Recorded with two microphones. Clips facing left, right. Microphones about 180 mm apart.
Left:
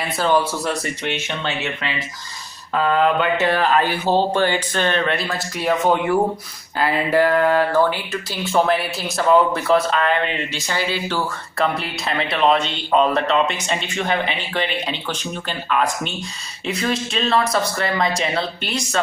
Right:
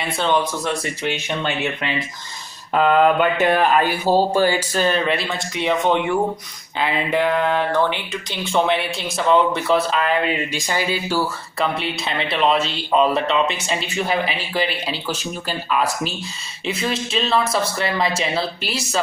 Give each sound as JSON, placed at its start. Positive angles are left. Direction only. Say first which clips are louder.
{"t": 0.0, "sound": "speech", "louder": "left 1 dB", "side_deg": 5}
{"t": 1.0, "sound": "mantra", "louder": "right 3 dB", "side_deg": -15}
{"t": 6.8, "sound": "speech", "louder": "left 3 dB", "side_deg": 5}
{"t": 10.5, "sound": "speech", "louder": "right 1 dB", "side_deg": -15}